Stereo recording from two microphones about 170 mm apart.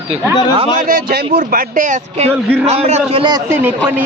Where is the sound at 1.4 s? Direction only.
55° right (ahead or behind); by 3.3 s 35° right (ahead or behind).